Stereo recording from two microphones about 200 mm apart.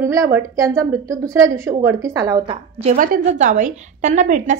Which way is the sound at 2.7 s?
35° right (ahead or behind).